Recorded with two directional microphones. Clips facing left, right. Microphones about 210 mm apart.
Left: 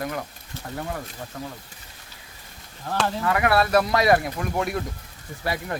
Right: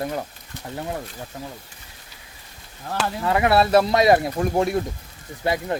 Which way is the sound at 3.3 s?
25° right (ahead or behind).